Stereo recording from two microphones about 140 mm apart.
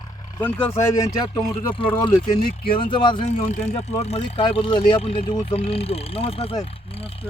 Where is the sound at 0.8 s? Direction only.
20° left (ahead or behind).